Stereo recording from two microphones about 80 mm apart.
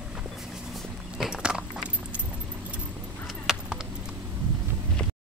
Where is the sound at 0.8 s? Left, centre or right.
Centre.